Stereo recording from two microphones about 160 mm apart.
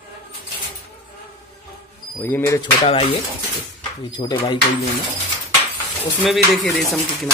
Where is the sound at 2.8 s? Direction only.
35° left (ahead or behind).